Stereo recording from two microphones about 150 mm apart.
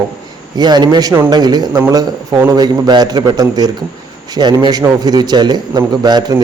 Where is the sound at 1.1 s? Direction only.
15° right (ahead or behind).